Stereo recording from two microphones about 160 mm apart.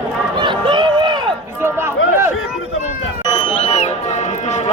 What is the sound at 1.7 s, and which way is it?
Run, 15° right (ahead or behind).